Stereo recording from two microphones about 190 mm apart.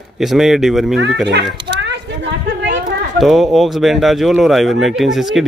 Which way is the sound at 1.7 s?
70° right (ahead or behind).